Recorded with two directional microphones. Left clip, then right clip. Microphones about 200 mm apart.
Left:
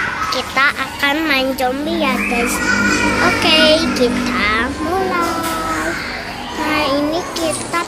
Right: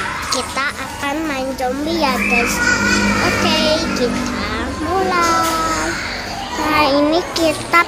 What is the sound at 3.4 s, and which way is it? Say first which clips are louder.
A child's voice: left 4 dB; centre (ahead or behind).